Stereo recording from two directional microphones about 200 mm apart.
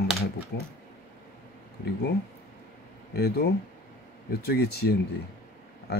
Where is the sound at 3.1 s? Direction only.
50° left (ahead or behind).